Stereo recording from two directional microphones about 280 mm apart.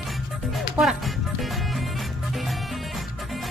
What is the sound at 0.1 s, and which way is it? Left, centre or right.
Music, centre.